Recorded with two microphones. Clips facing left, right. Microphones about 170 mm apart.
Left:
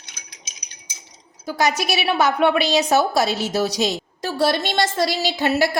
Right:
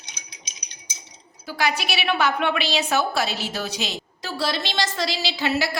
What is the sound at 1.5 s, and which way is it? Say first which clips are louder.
A woman's voice: left 4 dB; 40° left (ahead or behind).